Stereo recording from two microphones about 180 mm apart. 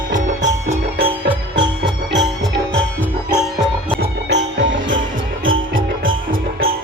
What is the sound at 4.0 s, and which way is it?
Music, 75° right (ahead or behind).